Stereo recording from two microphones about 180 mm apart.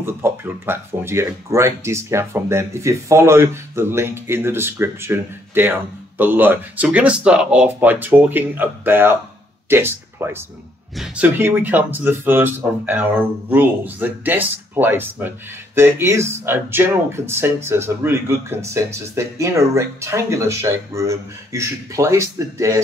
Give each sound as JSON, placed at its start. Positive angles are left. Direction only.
{"t": 0.0, "sound": "speech", "side_deg": -10}